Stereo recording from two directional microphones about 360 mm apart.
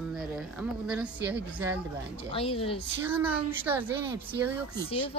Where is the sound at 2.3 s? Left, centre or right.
Centre.